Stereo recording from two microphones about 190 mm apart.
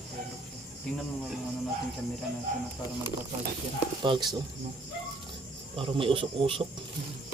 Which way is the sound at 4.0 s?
25° right (ahead or behind).